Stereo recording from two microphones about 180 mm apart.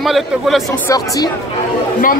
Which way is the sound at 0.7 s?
20° left (ahead or behind).